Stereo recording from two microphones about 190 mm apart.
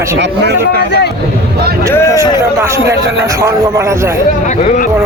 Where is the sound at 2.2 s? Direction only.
15° right (ahead or behind).